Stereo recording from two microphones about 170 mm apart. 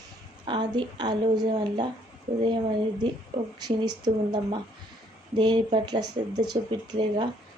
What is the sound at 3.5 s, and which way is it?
Speech, 25° right (ahead or behind).